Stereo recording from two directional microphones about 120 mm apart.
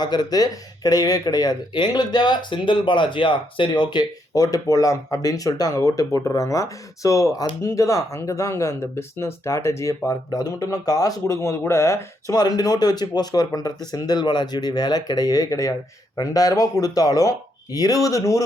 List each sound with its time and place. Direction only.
0.0 s speech: 35° left (ahead or behind)
12.3 s speech: 35° left (ahead or behind)